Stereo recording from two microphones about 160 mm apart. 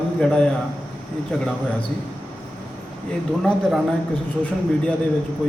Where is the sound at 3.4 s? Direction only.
Centre (ahead or behind).